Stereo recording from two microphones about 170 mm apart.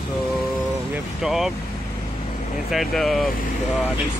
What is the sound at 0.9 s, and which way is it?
Speech, centre (ahead or behind).